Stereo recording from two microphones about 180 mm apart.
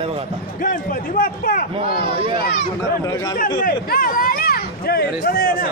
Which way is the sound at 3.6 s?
50° left (ahead or behind).